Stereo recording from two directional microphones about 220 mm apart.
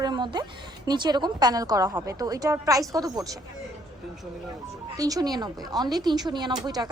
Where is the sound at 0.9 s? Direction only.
20° right (ahead or behind).